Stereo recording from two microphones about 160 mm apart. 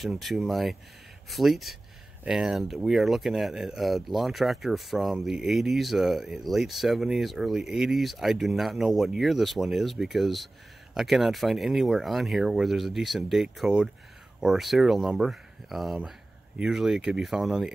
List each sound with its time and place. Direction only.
0.0 s speech: centre (ahead or behind)